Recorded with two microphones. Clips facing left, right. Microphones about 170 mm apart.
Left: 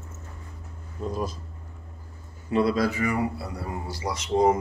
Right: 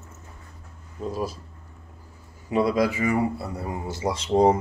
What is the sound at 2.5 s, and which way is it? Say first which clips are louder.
A man's voice: right 1 dB; 15° right (ahead or behind).